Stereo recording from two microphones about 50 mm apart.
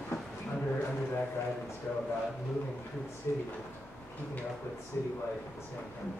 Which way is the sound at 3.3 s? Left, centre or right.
Left.